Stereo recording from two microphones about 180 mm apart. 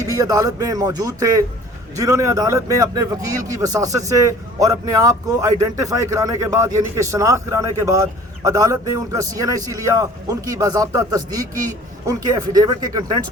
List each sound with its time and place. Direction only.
0.0 s a man's voice: 20° right (ahead or behind)